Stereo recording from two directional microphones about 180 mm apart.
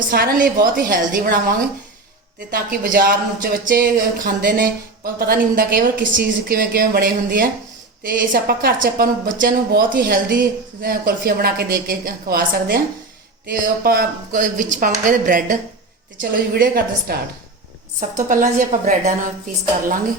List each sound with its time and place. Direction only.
0.1 s speech: 55° right (ahead or behind)
18.2 s speech: 45° right (ahead or behind)